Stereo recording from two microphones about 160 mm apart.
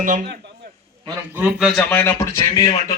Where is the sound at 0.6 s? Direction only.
90° right.